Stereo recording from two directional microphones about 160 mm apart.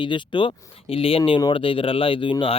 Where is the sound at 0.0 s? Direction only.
30° left (ahead or behind).